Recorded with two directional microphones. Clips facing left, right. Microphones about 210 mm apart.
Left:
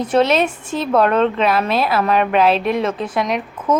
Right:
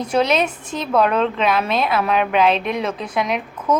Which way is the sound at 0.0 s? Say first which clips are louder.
Left 3 dB; centre (ahead or behind).